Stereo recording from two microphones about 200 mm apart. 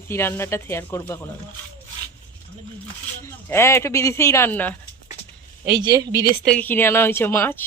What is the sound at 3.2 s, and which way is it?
Speech, 15° left (ahead or behind).